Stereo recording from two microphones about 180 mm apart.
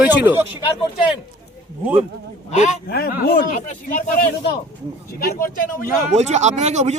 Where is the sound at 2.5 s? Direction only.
40° left (ahead or behind).